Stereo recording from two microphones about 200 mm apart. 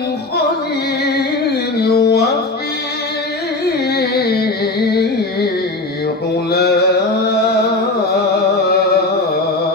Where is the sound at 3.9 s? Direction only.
55° left (ahead or behind).